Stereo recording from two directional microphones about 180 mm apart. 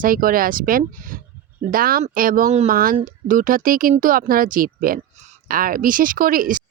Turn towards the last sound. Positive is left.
turn(degrees=-50)  # may be behind; listen again after turning